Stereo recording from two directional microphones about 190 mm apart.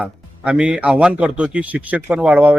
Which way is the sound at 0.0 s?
5° right (ahead or behind).